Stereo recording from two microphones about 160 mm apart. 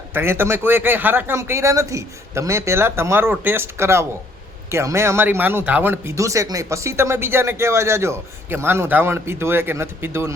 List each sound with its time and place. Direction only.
0.1 s speech: 15° right (ahead or behind)